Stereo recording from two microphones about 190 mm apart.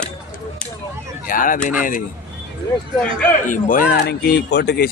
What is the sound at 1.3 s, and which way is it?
Speech, 45° left (ahead or behind).